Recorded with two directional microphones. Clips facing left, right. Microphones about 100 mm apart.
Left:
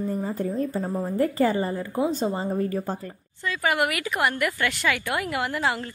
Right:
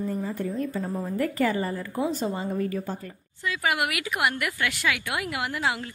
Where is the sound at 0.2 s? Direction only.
30° left (ahead or behind).